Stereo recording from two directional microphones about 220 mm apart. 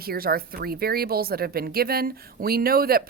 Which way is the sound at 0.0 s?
45° right (ahead or behind).